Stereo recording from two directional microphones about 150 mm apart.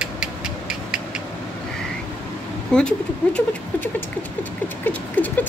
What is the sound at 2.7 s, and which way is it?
Rodents, 5° left (ahead or behind).